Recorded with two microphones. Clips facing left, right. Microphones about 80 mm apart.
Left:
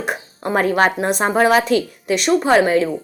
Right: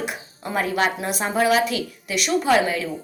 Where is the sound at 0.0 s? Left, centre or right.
Left.